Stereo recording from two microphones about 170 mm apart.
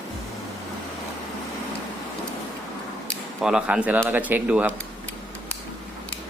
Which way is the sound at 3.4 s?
5° right (ahead or behind).